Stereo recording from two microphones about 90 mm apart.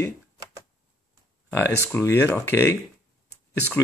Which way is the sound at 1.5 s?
25° left (ahead or behind).